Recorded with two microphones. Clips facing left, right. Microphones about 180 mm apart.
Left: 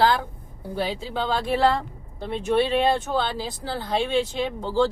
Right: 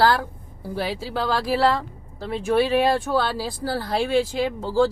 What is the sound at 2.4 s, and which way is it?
Speech, 10° right (ahead or behind).